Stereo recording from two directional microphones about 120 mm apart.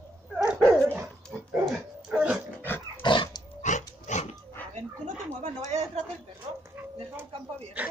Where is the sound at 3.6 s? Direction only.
85° left.